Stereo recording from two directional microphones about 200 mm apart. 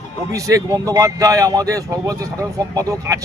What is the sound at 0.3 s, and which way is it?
Speech, 15° right (ahead or behind).